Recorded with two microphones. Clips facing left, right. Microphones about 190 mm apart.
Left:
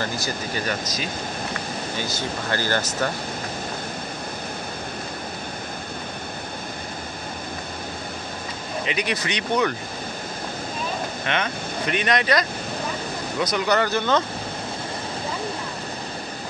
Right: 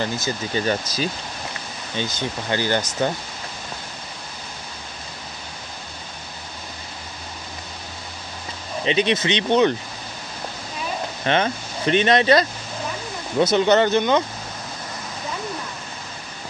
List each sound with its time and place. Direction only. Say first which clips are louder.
0.0 s speech: right 2 dB; 20° right (ahead or behind)
8.8 s speech: right 7 dB; 25° right (ahead or behind)
11.2 s speech: right 7 dB; 30° right (ahead or behind)